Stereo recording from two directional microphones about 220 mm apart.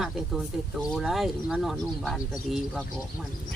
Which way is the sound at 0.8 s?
Centre (ahead or behind).